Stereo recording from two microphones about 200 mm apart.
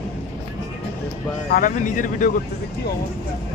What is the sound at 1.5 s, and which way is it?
Speech, 45° left (ahead or behind).